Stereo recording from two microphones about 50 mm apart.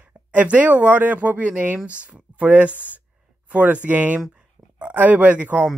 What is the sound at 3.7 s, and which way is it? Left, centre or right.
Speech, right.